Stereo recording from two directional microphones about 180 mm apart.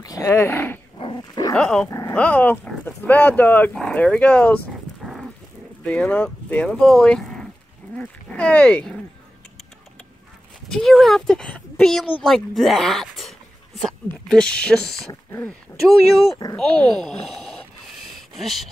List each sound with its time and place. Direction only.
0.0 s speech: 20° left (ahead or behind)
0.9 s dog: 25° left (ahead or behind)
1.5 s speech: 5° left (ahead or behind)
1.9 s speech: 20° left (ahead or behind)
5.9 s speech: 5° left (ahead or behind)
10.7 s speech: centre (ahead or behind)